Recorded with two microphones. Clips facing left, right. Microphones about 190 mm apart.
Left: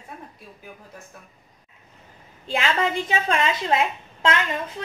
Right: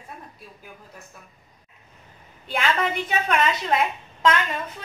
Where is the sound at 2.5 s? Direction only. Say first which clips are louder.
Left 1 dB; 25° left (ahead or behind).